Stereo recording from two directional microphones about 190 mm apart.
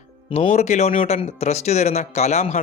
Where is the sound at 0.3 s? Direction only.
30° left (ahead or behind).